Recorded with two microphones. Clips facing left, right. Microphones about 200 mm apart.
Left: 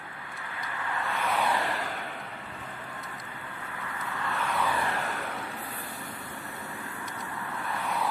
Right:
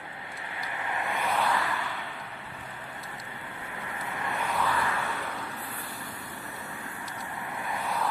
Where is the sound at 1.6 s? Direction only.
40° left (ahead or behind).